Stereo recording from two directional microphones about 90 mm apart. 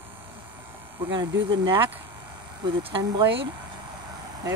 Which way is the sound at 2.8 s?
70° right (ahead or behind).